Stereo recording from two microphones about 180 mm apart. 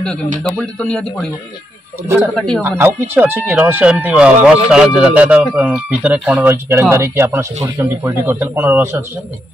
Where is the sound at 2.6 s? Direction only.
10° right (ahead or behind).